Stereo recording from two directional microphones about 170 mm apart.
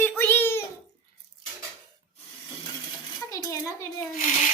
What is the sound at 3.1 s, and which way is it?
Dishes, 20° left (ahead or behind).